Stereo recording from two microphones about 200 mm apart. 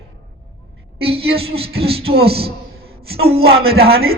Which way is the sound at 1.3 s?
30° right (ahead or behind).